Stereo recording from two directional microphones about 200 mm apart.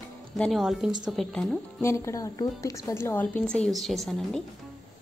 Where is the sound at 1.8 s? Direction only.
15° left (ahead or behind).